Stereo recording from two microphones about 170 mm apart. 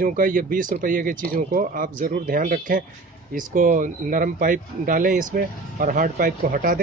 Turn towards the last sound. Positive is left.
turn(degrees=-55)  # may be behind; listen again after turning